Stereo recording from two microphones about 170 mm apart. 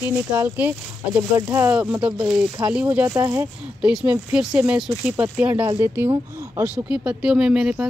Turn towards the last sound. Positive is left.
turn(degrees=-5)  # may be behind; listen again after turning